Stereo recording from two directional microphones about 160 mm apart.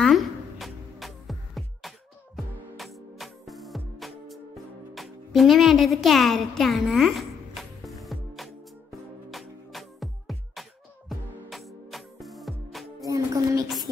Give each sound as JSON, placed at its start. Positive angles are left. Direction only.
{"t": 0.0, "sound": "music", "side_deg": 0}
{"t": 13.0, "sound": "music", "side_deg": -20}